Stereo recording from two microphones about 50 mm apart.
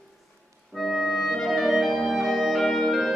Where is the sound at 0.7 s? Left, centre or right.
Centre.